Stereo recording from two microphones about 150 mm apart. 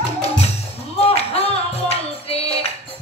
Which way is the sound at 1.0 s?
40° left (ahead or behind).